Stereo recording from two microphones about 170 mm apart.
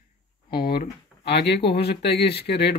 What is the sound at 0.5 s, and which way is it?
Speech, 65° left (ahead or behind).